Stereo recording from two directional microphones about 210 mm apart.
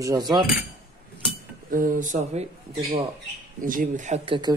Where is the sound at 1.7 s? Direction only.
40° right (ahead or behind).